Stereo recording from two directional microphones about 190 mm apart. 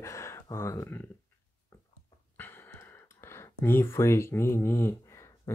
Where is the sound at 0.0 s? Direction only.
15° left (ahead or behind).